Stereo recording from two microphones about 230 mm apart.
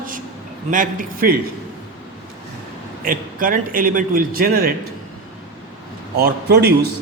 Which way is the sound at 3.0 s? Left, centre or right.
Right.